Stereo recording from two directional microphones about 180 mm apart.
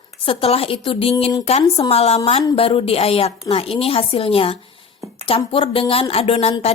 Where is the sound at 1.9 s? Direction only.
35° left (ahead or behind).